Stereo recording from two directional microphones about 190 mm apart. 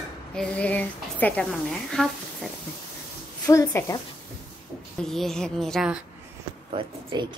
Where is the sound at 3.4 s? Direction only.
15° left (ahead or behind).